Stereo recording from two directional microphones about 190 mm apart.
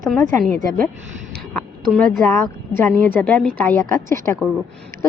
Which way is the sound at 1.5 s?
5° left (ahead or behind).